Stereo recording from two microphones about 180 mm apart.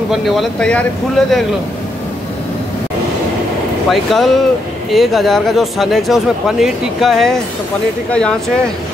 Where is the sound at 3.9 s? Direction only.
Centre (ahead or behind).